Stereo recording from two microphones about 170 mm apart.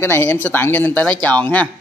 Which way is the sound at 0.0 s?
10° left (ahead or behind).